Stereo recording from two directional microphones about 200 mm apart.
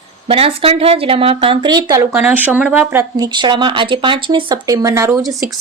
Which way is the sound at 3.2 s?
20° right (ahead or behind).